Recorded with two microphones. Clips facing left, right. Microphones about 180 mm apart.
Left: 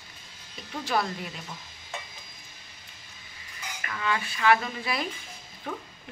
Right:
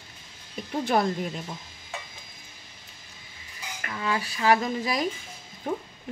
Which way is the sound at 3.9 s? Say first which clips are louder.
Right 1 dB; 30° right (ahead or behind).